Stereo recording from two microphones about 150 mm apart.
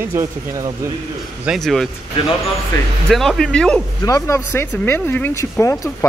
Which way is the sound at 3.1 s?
Centre (ahead or behind).